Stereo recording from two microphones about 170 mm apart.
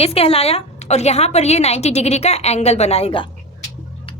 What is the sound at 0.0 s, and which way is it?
A woman's voice, 35° left (ahead or behind).